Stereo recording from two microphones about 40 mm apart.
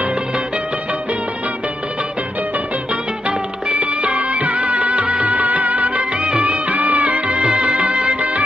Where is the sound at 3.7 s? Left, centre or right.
Right.